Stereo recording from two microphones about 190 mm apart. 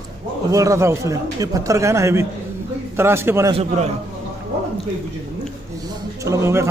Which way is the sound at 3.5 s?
35° right (ahead or behind).